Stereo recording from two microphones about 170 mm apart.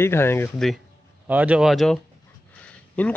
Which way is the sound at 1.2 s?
10° right (ahead or behind).